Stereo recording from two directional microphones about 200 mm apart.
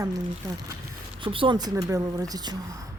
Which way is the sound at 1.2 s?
25° right (ahead or behind).